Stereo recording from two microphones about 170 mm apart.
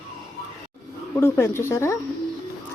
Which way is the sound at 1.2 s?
15° left (ahead or behind).